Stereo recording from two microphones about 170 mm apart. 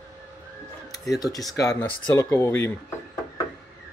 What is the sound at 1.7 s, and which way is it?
Speech, 10° left (ahead or behind).